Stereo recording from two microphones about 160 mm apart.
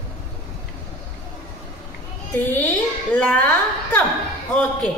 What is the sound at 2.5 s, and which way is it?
A woman's voice, 10° left (ahead or behind).